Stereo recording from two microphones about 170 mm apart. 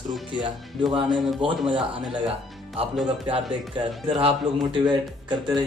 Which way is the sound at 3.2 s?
30° right (ahead or behind).